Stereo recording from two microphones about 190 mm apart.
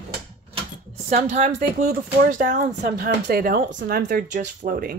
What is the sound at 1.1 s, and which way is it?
A woman's voice, 40° right (ahead or behind).